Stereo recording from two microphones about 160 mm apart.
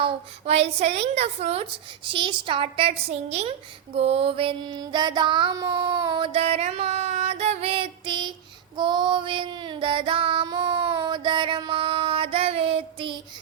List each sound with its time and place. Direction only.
0.0 s mantra: 40° right (ahead or behind)
8.7 s child singing: 30° right (ahead or behind)